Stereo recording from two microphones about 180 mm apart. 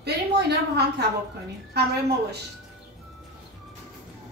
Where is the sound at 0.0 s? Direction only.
65° right (ahead or behind).